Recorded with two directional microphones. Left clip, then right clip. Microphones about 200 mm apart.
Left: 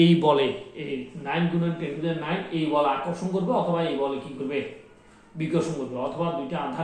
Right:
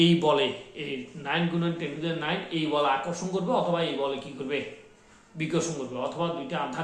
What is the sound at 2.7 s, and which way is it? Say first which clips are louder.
Speech: left 2 dB; 20° right (ahead or behind).